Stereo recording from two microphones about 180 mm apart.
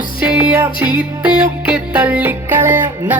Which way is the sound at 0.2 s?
10° right (ahead or behind).